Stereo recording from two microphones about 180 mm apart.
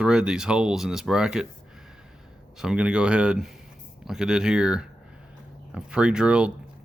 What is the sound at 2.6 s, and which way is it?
Speech, 5° right (ahead or behind).